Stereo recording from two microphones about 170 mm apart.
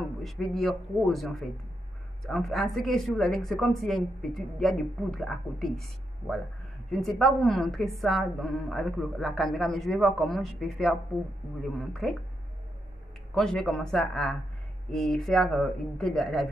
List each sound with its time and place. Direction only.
0.2 s a woman's voice: centre (ahead or behind)
13.3 s a woman's voice: 5° left (ahead or behind)